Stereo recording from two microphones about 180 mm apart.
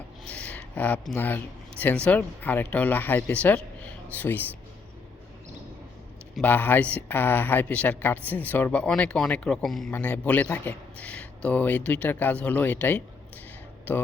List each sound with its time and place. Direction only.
0.3 s a sound: 5° left (ahead or behind)
2.0 s speech: 10° left (ahead or behind)
6.3 s speech: 10° left (ahead or behind)